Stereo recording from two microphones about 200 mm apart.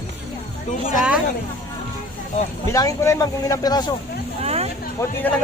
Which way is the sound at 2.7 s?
15° left (ahead or behind).